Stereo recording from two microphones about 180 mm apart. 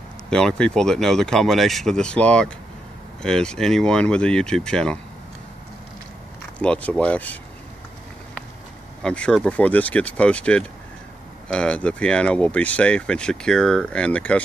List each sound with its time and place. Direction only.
0.3 s speech: 5° left (ahead or behind)
6.6 s speech: 5° left (ahead or behind)
9.0 s speech: 5° left (ahead or behind)